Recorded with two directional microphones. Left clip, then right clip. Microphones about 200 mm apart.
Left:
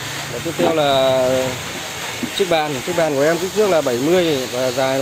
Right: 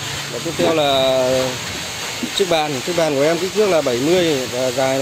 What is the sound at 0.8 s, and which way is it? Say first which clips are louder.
Speech: left 1 dB; 10° right (ahead or behind).